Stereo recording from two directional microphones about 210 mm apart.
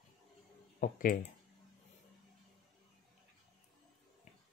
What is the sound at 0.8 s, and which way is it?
Speech, 40° left (ahead or behind).